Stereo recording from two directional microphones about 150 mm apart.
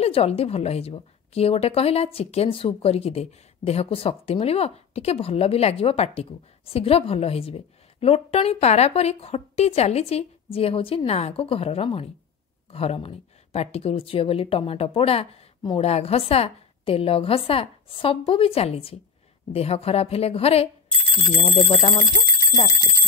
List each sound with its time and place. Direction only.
0.0 s a woman's voice: 40° left (ahead or behind)
21.6 s a woman's voice: 50° left (ahead or behind)